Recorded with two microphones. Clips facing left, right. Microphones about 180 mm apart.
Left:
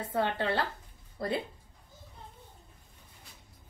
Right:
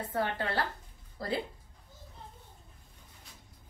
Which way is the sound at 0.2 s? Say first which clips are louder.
Left 3 dB; 25° left (ahead or behind).